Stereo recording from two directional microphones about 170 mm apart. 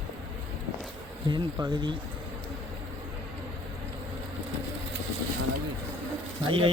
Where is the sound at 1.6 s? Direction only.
25° right (ahead or behind).